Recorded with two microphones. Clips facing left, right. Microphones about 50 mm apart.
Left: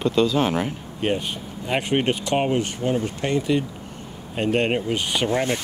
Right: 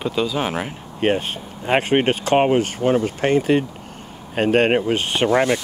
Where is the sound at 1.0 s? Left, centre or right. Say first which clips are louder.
Right 4 dB; right.